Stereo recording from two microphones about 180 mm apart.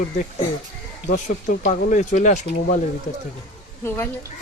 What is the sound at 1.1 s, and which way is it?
Speech, 45° left (ahead or behind).